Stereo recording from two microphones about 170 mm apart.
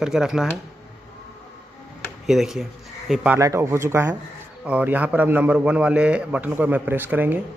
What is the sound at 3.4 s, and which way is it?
A man's voice, 15° right (ahead or behind).